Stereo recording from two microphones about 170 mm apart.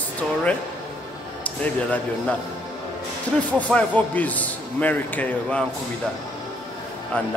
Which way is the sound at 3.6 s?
10° left (ahead or behind).